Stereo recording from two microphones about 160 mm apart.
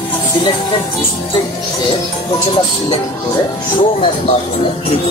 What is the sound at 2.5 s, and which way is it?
Speech, 30° left (ahead or behind).